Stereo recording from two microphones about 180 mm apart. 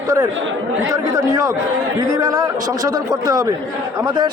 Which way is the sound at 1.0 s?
20° right (ahead or behind).